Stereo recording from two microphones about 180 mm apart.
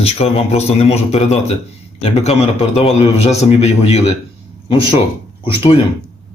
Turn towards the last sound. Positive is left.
turn(degrees=30)  # may be behind; listen again after turning